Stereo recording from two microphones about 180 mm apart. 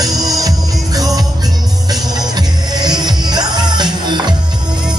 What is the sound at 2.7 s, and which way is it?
Music, 25° right (ahead or behind).